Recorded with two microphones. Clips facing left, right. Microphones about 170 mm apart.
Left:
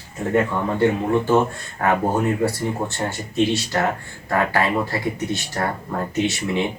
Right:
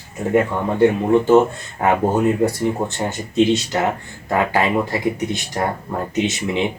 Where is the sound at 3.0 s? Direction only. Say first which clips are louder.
Right 3 dB; 20° right (ahead or behind).